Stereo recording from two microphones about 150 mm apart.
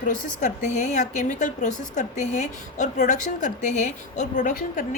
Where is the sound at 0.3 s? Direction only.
50° left (ahead or behind).